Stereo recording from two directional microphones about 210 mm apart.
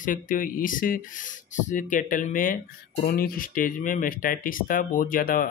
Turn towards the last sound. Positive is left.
turn(degrees=40)  # may be behind; listen again after turning